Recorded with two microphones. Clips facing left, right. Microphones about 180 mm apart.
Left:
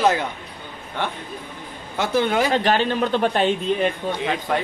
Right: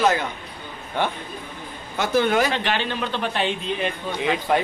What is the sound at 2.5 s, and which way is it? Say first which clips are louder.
A man's voice: left 5 dB; 40° left (ahead or behind).